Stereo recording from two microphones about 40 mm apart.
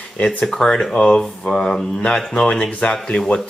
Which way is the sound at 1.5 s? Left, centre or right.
Centre.